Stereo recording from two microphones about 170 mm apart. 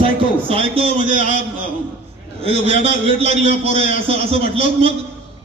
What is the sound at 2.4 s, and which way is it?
A man's voice, 35° right (ahead or behind).